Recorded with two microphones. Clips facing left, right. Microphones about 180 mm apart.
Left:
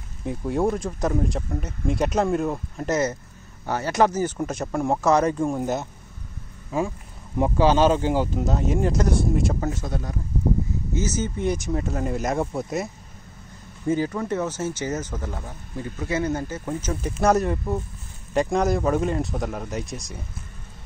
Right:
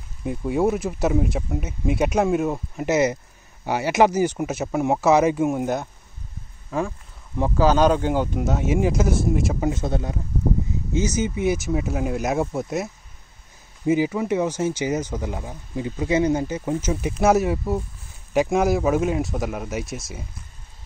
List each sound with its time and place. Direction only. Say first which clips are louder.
0.2 s speech: right 2 dB; centre (ahead or behind)
7.3 s speech: even; 10° left (ahead or behind)
9.6 s speech: right 4 dB; 20° right (ahead or behind)
11.0 s speech: right 4 dB; 10° right (ahead or behind)